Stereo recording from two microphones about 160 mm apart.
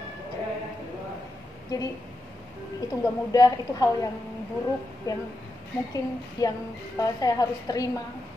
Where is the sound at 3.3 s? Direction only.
20° left (ahead or behind).